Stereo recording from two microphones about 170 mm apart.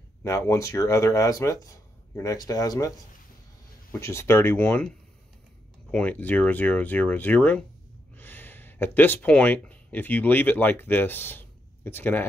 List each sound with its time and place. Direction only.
0.2 s speech: 15° left (ahead or behind)
4.0 s speech: 15° left (ahead or behind)